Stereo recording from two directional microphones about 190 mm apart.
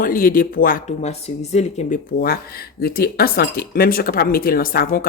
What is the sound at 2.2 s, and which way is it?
Speech, 55° left (ahead or behind).